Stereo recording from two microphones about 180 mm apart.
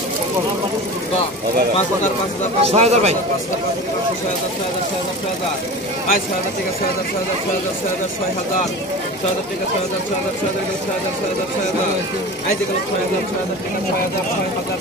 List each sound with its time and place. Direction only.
2.6 s speech: 35° right (ahead or behind)